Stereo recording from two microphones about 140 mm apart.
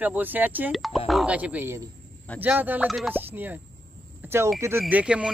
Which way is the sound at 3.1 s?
15° right (ahead or behind).